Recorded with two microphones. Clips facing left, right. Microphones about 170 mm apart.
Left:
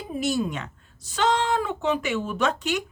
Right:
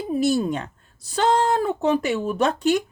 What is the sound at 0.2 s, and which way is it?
Speech, 35° right (ahead or behind).